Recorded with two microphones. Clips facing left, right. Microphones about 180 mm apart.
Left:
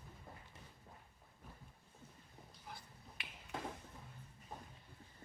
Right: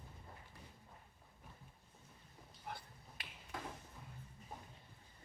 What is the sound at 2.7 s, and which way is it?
Finger snapping, 60° right (ahead or behind).